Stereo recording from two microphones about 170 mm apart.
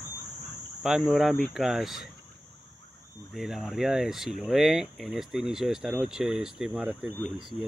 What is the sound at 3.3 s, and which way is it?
Speech, centre (ahead or behind).